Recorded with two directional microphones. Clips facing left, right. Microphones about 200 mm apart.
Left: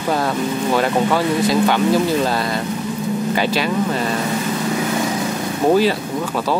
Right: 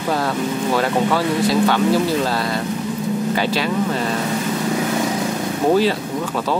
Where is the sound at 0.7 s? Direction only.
20° left (ahead or behind).